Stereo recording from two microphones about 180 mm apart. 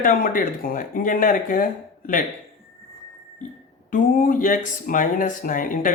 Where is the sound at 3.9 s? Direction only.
50° left (ahead or behind).